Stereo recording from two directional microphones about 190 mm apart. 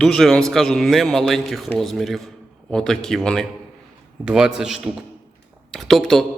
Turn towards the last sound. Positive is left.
turn(degrees=0)  # may be behind; listen again after turning